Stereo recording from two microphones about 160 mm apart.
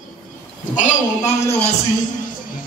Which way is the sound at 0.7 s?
45° left (ahead or behind).